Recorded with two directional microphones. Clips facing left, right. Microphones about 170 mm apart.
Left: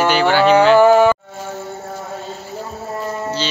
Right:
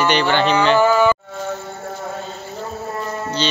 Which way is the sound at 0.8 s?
55° left (ahead or behind).